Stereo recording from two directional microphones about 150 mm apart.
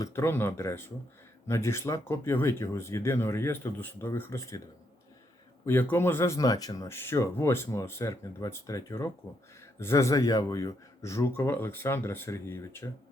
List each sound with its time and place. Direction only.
0.0 s speech: 15° left (ahead or behind)
5.6 s speech: 15° left (ahead or behind)